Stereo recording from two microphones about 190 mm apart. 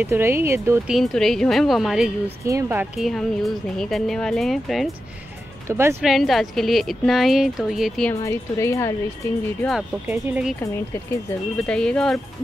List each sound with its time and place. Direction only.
0.0 s speech: 10° right (ahead or behind)
0.9 s speech: centre (ahead or behind)
5.7 s speech: 15° right (ahead or behind)
6.0 s speech: centre (ahead or behind)
8.1 s a woman's voice: 15° left (ahead or behind)
9.6 s speech: centre (ahead or behind)
10.0 s speech: 10° right (ahead or behind)
11.5 s speech: 5° left (ahead or behind)